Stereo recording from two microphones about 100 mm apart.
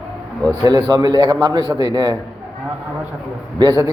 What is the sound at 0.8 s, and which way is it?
A man's voice, 40° right (ahead or behind).